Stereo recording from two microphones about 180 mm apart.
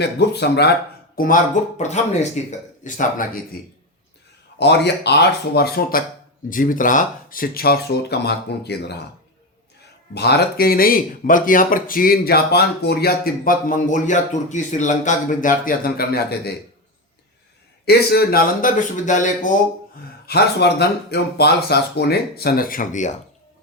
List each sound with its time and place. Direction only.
0.0 s speech: 65° left (ahead or behind)
1.1 s speech: 50° left (ahead or behind)
1.8 s speech: 40° left (ahead or behind)
4.5 s speech: 70° left (ahead or behind)
6.5 s speech: 50° left (ahead or behind); by 9.0 s 65° left (ahead or behind)
10.2 s speech: 60° left (ahead or behind)
17.8 s speech: 60° left (ahead or behind); by 19.5 s 45° left (ahead or behind)
20.2 s speech: 65° left (ahead or behind); by 23.1 s 45° left (ahead or behind)